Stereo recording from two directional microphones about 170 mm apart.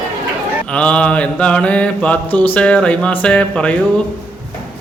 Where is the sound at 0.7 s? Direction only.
5° left (ahead or behind).